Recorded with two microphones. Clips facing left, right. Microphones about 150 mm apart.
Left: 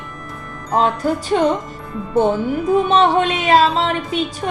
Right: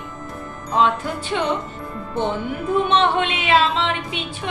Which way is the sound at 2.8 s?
40° left (ahead or behind).